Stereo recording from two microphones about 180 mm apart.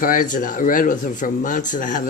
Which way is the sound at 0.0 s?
50° left (ahead or behind).